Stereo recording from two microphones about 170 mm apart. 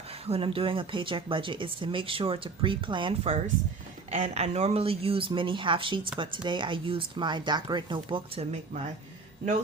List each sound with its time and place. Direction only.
0.1 s speech: 35° right (ahead or behind)
4.1 s speech: 40° right (ahead or behind)